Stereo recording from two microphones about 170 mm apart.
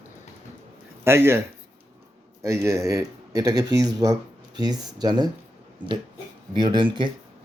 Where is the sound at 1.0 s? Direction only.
15° right (ahead or behind).